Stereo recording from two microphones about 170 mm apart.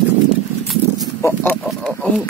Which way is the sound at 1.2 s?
15° left (ahead or behind).